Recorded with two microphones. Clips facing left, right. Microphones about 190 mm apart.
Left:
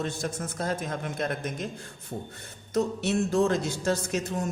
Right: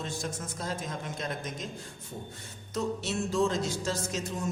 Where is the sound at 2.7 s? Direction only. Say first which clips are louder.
Left 6 dB; 60° left (ahead or behind).